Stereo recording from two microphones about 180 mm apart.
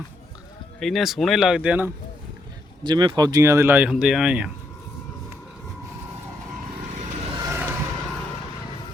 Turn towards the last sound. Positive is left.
turn(degrees=-15)  # may be behind; listen again after turning